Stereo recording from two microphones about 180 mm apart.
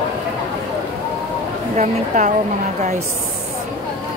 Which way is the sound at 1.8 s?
40° right (ahead or behind).